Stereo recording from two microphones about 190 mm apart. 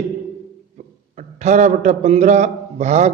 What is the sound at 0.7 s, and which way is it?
A man's voice, 40° right (ahead or behind).